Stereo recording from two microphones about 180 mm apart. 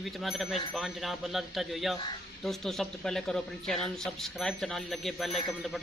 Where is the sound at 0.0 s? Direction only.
Centre (ahead or behind).